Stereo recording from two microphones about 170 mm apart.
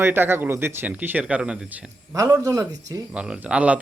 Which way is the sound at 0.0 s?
10° right (ahead or behind).